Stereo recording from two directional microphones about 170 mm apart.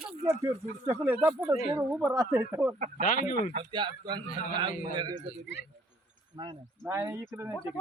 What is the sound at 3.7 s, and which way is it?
A man's voice, 25° right (ahead or behind).